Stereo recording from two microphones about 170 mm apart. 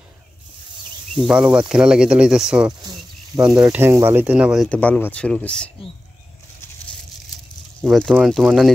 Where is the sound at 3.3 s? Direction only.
20° right (ahead or behind); by 4.6 s 5° right (ahead or behind).